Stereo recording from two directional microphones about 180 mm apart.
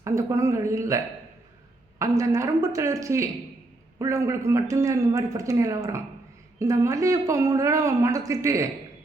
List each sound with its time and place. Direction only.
0.0 s speech: 15° right (ahead or behind)